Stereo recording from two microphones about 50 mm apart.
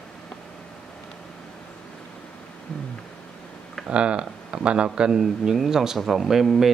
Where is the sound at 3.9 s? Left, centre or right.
Right; by 6.7 s centre.